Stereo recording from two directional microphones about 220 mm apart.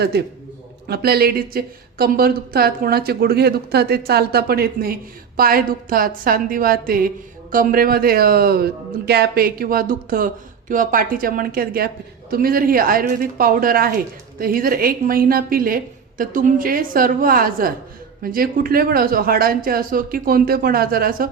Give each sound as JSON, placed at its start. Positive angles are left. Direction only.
{"t": 0.9, "sound": "speech", "side_deg": -45}